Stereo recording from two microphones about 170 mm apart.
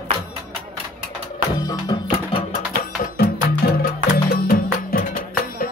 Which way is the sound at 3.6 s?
60° left (ahead or behind).